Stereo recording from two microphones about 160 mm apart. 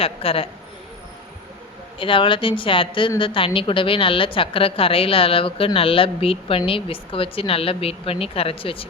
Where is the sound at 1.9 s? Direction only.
35° left (ahead or behind).